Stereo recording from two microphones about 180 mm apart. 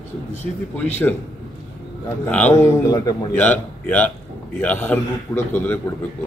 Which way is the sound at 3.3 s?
10° left (ahead or behind).